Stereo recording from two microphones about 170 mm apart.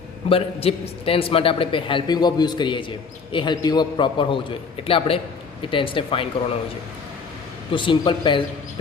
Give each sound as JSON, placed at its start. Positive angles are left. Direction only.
{"t": 0.3, "sound": "a man's voice", "side_deg": 35}
{"t": 7.7, "sound": "a man's voice", "side_deg": 30}